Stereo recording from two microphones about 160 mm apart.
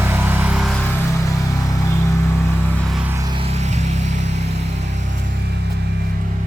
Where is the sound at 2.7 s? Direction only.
5° left (ahead or behind).